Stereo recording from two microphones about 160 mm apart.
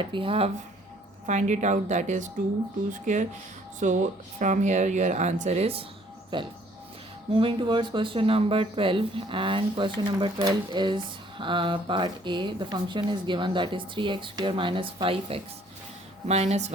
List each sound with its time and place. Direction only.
0.0 s speech: 35° right (ahead or behind)
1.3 s speech: 50° right (ahead or behind)
6.3 s a sound: 30° right (ahead or behind)
7.3 s speech: 30° right (ahead or behind)